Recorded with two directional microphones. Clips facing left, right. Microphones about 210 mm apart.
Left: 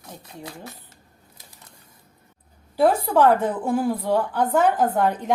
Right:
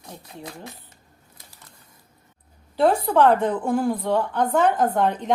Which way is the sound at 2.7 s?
10° left (ahead or behind).